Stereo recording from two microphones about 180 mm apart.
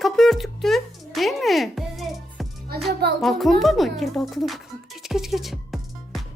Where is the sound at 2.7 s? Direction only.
60° right (ahead or behind).